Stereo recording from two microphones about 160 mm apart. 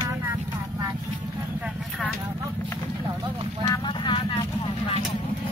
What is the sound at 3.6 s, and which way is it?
Vehicle, 30° left (ahead or behind).